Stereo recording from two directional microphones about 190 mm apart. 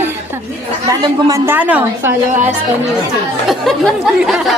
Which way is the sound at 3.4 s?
Centre (ahead or behind).